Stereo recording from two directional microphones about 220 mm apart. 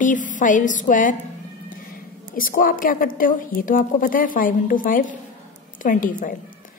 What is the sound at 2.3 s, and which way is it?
A woman's voice, 40° left (ahead or behind).